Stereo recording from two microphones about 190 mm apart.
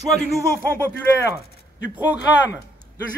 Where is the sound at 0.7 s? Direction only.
15° right (ahead or behind).